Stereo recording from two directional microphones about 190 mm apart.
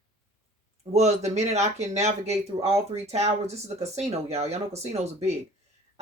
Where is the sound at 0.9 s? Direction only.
35° right (ahead or behind).